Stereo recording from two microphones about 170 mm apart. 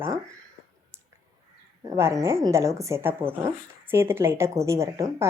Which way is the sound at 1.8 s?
20° right (ahead or behind).